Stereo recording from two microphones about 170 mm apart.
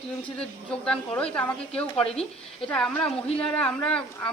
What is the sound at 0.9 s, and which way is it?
A woman's voice, 5° left (ahead or behind).